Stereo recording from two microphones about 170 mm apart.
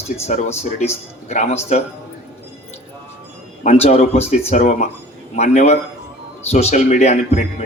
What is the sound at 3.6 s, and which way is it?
A man's voice, 40° left (ahead or behind).